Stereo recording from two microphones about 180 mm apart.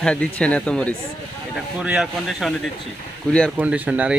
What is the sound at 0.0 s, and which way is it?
Speech, 5° left (ahead or behind).